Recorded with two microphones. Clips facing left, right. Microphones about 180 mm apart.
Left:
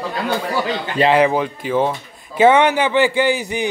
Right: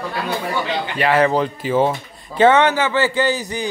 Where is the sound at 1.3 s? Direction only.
5° left (ahead or behind).